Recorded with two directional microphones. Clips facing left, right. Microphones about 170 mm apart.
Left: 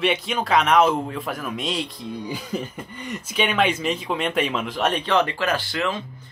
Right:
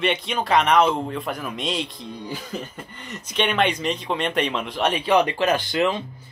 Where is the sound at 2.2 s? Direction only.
15° left (ahead or behind).